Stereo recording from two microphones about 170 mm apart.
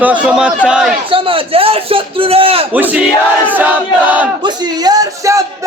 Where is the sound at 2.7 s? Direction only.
10° right (ahead or behind).